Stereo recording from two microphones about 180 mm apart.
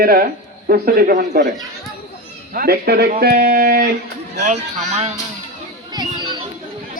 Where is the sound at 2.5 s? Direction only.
55° right (ahead or behind).